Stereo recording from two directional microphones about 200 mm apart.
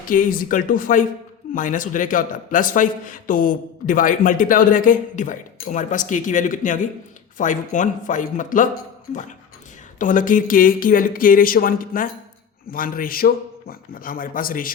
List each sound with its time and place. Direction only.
0.1 s a man's voice: 45° left (ahead or behind)
10.0 s speech: 40° left (ahead or behind)